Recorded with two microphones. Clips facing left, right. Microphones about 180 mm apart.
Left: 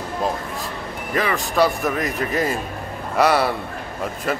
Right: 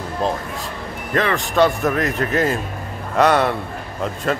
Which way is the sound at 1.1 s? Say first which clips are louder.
Right 2 dB; centre (ahead or behind).